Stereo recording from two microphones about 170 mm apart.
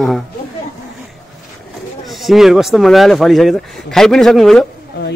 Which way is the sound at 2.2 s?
Centre (ahead or behind).